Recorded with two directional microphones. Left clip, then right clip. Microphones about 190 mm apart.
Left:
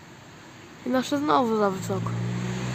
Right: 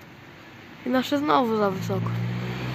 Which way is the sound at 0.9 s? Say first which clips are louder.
Right 1 dB; 10° left (ahead or behind).